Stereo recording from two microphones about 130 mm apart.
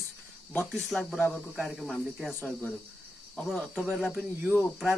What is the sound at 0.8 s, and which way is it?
Speech, 5° left (ahead or behind).